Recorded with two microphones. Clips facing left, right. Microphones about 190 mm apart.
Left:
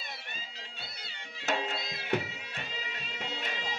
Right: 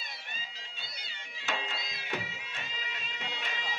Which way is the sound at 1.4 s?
45° left (ahead or behind).